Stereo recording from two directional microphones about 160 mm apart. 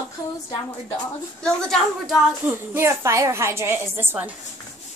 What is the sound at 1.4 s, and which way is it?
Speech, 5° left (ahead or behind).